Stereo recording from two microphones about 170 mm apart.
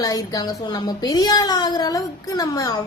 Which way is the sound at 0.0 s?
20° left (ahead or behind).